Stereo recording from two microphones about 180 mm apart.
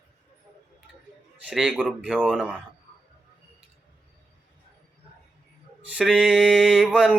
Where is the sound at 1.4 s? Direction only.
5° right (ahead or behind).